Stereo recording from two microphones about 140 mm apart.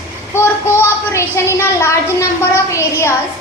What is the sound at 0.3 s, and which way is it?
A woman's voice, 15° left (ahead or behind).